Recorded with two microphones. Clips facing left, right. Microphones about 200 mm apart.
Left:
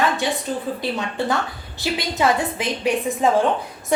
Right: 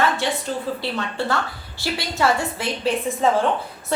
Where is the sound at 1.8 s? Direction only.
20° left (ahead or behind).